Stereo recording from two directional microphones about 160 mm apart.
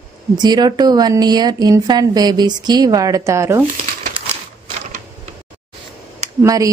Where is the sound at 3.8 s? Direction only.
45° right (ahead or behind).